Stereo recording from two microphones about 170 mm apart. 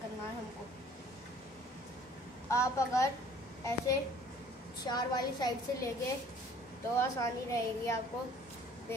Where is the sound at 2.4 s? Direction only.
15° left (ahead or behind).